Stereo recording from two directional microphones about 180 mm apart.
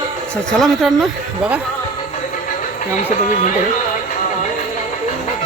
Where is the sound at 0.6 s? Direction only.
Centre (ahead or behind).